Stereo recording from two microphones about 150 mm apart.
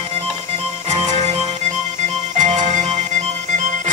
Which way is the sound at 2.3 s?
55° right (ahead or behind).